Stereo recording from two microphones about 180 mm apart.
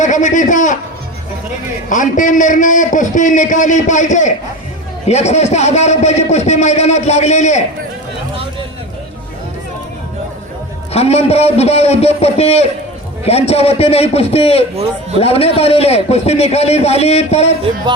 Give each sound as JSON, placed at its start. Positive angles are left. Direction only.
{"t": 0.0, "sound": "a man's voice", "side_deg": 45}
{"t": 1.9, "sound": "a man's voice", "side_deg": 45}
{"t": 10.9, "sound": "a man's voice", "side_deg": 35}